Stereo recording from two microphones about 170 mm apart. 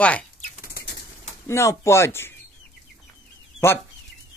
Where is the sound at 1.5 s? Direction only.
15° left (ahead or behind).